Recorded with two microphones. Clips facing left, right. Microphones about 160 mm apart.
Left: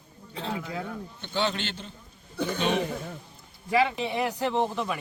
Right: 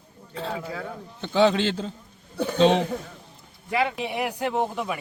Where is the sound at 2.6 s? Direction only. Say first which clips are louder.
Right 9 dB; 90° right.